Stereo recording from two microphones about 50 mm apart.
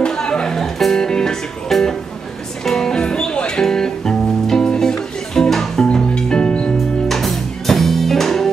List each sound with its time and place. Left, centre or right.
0.0 s music: centre
0.6 s music: centre
7.1 s music: centre